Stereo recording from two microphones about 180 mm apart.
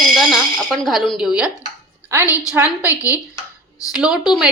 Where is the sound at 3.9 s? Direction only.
5° right (ahead or behind).